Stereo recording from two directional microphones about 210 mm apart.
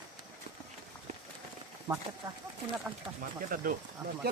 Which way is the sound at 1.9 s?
20° right (ahead or behind).